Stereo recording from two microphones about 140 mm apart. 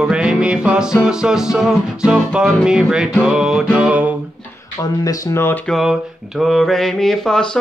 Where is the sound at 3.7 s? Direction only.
10° right (ahead or behind).